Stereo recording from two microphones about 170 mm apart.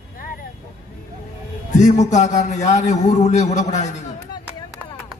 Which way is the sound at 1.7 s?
45° left (ahead or behind).